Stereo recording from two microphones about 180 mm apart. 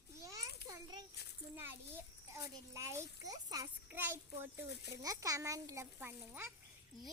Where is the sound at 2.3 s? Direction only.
15° right (ahead or behind).